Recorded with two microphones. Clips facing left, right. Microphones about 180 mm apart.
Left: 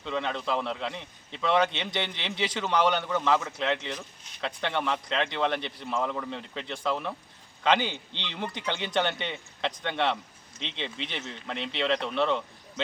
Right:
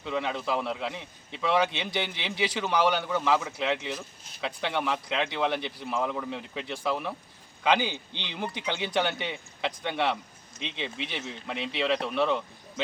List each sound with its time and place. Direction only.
0.0 s speech: 10° right (ahead or behind)